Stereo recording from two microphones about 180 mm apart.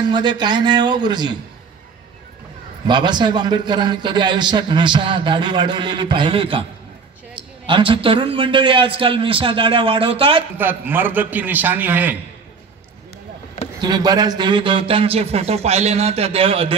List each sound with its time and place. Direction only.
0.1 s a man's voice: 25° right (ahead or behind)
2.9 s a man's voice: 25° right (ahead or behind)
10.6 s a man's voice: 10° right (ahead or behind)
13.7 s a man's voice: 20° right (ahead or behind)